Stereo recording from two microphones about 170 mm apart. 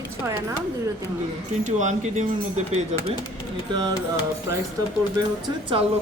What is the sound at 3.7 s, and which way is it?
Speech, 25° right (ahead or behind).